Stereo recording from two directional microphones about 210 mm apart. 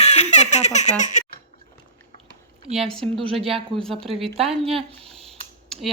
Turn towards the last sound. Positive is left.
turn(degrees=0)  # may be behind; listen again after turning